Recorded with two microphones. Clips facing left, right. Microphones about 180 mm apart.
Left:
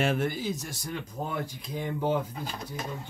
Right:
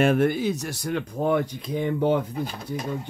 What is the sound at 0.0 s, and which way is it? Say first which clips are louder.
Speech: right 8 dB; 55° right (ahead or behind).